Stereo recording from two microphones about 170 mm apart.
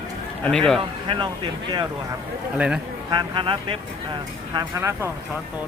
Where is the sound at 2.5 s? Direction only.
5° right (ahead or behind).